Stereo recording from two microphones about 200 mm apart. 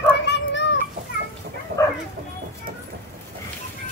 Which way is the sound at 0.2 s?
60° left (ahead or behind).